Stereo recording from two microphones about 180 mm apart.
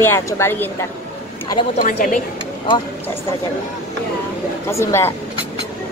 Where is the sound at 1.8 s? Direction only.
50° left (ahead or behind).